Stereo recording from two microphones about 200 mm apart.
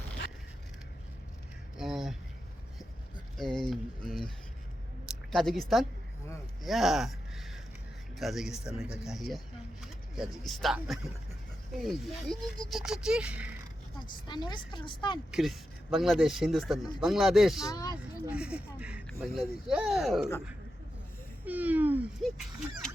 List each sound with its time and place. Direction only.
1.7 s a sound: centre (ahead or behind)
3.3 s speech: centre (ahead or behind)
5.0 s a sound: centre (ahead or behind)
8.2 s speech: centre (ahead or behind)
14.3 s speech: 20° left (ahead or behind)
15.3 s speech: centre (ahead or behind)
17.7 s speech: 20° left (ahead or behind)
18.3 s speech: 5° right (ahead or behind)
21.4 s speech: 10° right (ahead or behind)